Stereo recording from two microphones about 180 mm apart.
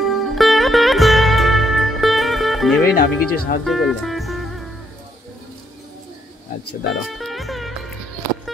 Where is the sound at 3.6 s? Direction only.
Centre (ahead or behind).